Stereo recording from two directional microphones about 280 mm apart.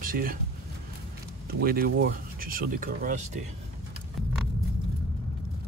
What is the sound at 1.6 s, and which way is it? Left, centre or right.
Speech, right.